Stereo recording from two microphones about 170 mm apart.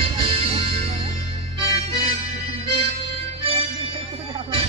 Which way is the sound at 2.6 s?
35° right (ahead or behind).